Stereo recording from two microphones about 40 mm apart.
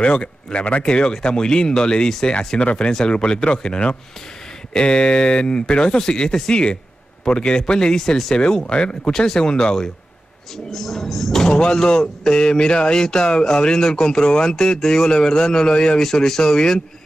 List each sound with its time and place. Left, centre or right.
0.0 s speech: left
10.7 s speech: centre
11.4 s speech: left